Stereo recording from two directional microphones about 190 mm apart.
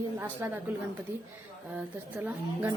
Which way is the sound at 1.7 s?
10° right (ahead or behind).